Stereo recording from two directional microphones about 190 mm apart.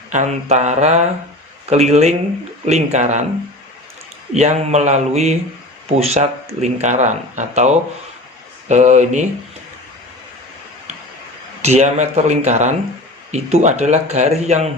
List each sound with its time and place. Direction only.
0.1 s speech: 35° right (ahead or behind)
4.4 s speech: 35° right (ahead or behind)
11.6 s speech: 35° right (ahead or behind)